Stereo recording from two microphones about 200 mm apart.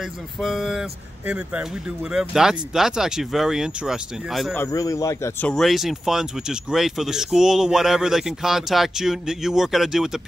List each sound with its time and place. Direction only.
0.4 s speech: centre (ahead or behind)
4.6 s speech: 15° left (ahead or behind)
5.5 s speech: centre (ahead or behind)